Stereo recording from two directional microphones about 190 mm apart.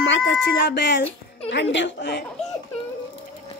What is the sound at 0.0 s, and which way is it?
A woman's voice, 70° left (ahead or behind).